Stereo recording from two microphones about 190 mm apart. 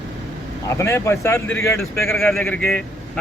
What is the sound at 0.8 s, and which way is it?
Speech, 15° left (ahead or behind).